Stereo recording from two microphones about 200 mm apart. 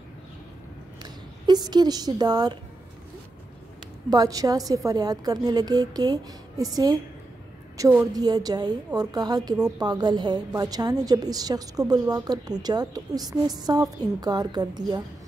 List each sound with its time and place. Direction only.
1.5 s a woman's voice: 20° right (ahead or behind)
4.1 s a woman's voice: 20° right (ahead or behind)